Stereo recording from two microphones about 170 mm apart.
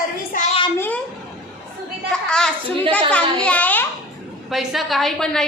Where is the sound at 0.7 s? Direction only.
10° left (ahead or behind).